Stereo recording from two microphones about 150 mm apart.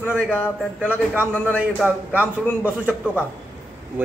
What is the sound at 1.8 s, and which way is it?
A man's voice, 5° right (ahead or behind).